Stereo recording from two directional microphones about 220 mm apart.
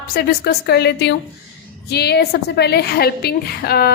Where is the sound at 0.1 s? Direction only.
45° left (ahead or behind).